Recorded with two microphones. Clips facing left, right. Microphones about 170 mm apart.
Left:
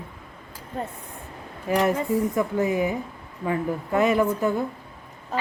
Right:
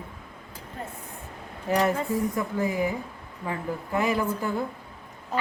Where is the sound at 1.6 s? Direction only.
20° left (ahead or behind).